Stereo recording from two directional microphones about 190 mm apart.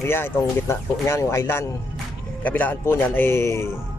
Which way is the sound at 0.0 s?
10° left (ahead or behind).